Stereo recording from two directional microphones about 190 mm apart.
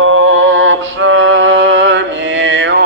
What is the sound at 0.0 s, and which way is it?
Music, 90° right.